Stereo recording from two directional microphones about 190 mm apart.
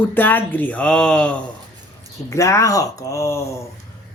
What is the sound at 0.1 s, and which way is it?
Speech, 10° left (ahead or behind).